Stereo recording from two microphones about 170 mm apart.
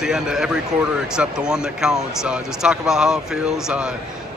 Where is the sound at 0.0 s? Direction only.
5° right (ahead or behind).